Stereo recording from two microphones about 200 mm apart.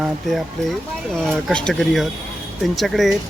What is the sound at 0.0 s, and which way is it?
Speech, centre (ahead or behind).